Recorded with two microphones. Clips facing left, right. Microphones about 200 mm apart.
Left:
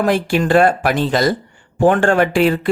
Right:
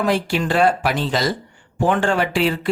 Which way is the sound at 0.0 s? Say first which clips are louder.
Left 4 dB; 50° left (ahead or behind).